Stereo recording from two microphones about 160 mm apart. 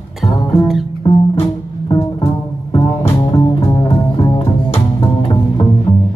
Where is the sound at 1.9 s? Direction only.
20° left (ahead or behind).